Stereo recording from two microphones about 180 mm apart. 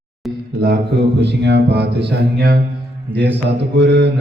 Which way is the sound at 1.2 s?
70° right (ahead or behind).